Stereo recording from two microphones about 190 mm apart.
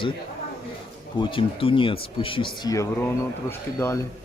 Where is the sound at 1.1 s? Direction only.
25° left (ahead or behind).